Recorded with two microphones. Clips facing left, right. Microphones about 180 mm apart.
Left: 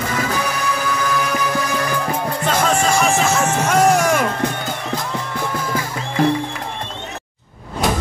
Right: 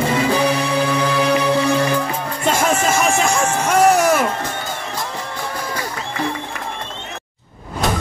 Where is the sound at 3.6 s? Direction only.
10° right (ahead or behind).